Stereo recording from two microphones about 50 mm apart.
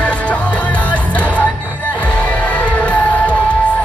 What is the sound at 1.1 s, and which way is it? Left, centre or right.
Music, left.